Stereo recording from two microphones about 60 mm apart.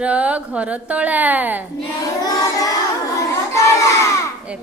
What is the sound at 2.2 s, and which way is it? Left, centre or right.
Child singing, left.